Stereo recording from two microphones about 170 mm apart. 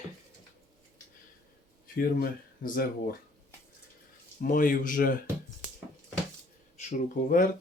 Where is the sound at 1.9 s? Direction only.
60° left (ahead or behind).